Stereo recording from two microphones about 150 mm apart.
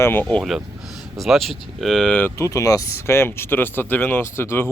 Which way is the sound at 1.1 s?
Centre (ahead or behind).